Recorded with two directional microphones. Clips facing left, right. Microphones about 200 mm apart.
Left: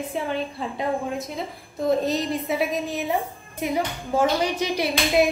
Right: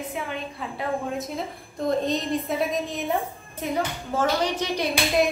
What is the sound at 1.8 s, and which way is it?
Speech, 5° left (ahead or behind).